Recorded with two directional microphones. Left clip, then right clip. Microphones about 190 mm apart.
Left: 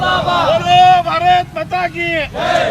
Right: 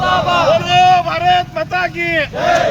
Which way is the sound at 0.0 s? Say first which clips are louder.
Right 1 dB; 45° right (ahead or behind).